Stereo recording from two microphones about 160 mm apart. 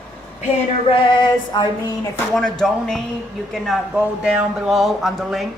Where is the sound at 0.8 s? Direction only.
30° left (ahead or behind).